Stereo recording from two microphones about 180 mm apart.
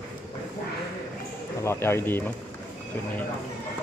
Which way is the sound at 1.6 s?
15° left (ahead or behind).